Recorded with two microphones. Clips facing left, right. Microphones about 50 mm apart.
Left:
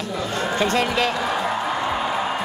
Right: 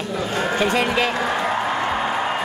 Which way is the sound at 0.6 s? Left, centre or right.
Centre.